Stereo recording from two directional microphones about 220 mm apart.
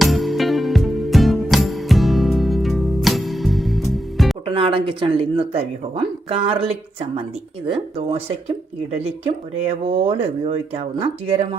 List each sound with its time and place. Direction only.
0.0 s music: centre (ahead or behind)
4.4 s speech: 25° right (ahead or behind)